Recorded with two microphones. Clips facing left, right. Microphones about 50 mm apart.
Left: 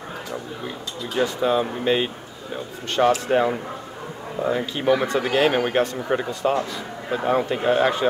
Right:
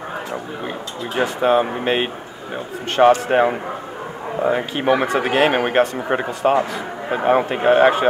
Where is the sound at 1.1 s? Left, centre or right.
Right.